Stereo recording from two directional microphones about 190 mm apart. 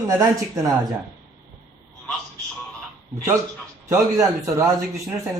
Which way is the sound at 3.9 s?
15° right (ahead or behind).